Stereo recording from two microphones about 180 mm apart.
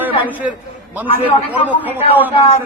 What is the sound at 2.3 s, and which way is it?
Speech, 35° left (ahead or behind).